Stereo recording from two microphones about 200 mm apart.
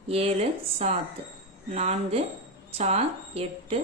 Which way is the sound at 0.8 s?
30° right (ahead or behind).